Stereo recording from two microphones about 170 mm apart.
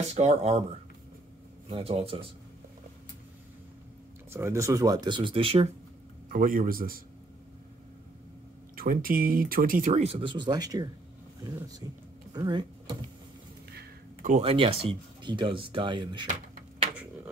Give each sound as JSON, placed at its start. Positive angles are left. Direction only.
{"t": 0.1, "sound": "speech", "side_deg": -40}
{"t": 1.7, "sound": "speech", "side_deg": -35}
{"t": 4.3, "sound": "speech", "side_deg": -15}
{"t": 6.2, "sound": "a man's voice", "side_deg": -50}
{"t": 8.7, "sound": "speech", "side_deg": -55}
{"t": 10.0, "sound": "speech", "side_deg": -30}
{"t": 14.4, "sound": "speech", "side_deg": -35}